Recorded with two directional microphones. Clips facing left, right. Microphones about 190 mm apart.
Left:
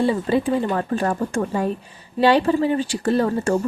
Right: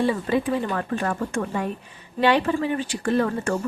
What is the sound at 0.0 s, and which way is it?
A woman's voice, 30° left (ahead or behind).